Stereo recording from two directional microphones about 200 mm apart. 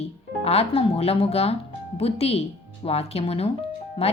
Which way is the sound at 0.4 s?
30° left (ahead or behind).